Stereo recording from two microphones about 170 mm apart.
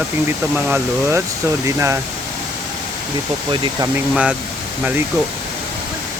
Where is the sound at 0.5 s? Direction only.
15° right (ahead or behind).